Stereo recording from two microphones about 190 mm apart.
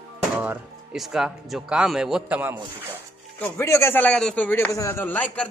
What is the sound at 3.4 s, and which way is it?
A man's voice, 10° left (ahead or behind).